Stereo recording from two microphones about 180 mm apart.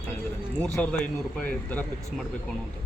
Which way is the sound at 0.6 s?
5° left (ahead or behind).